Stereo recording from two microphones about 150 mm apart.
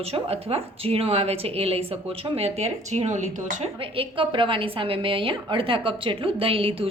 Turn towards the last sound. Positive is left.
turn(degrees=-40)  # may be behind; listen again after turning